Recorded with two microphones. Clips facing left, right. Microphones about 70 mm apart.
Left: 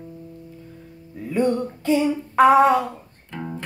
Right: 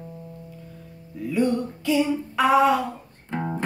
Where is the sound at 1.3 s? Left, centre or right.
Left.